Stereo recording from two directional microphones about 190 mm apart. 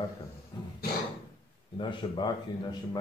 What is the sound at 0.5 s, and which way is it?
Speech, 20° left (ahead or behind).